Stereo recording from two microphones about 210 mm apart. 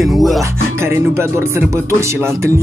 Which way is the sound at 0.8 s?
10° right (ahead or behind).